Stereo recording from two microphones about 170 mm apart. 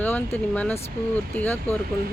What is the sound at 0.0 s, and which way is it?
A woman's voice, 10° left (ahead or behind).